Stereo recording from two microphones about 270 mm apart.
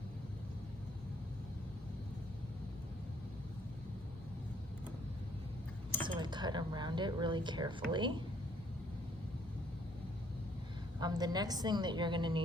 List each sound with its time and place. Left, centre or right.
6.1 s speech: centre
11.0 s a woman's voice: centre